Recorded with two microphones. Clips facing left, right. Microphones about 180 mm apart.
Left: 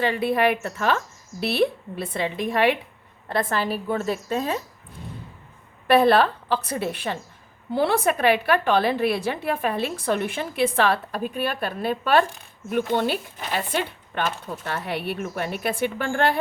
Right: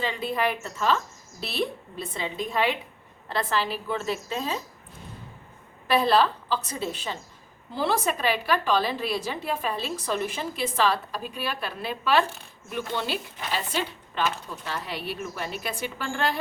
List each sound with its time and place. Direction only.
0.0 s a woman's voice: 65° left (ahead or behind)
3.2 s a woman's voice: 50° left (ahead or behind)
5.9 s a woman's voice: 55° left (ahead or behind)